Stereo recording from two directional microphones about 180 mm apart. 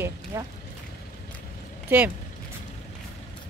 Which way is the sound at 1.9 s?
10° right (ahead or behind).